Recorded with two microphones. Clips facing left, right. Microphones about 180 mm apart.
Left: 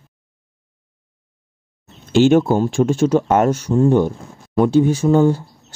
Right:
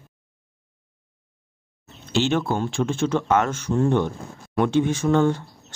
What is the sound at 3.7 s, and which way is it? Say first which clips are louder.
Speech: left 4 dB; 15° left (ahead or behind).